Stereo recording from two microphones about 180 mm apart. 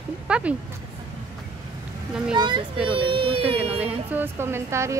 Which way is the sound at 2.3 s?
25° right (ahead or behind).